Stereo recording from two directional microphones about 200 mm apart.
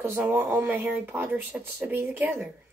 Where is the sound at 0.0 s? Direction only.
10° right (ahead or behind).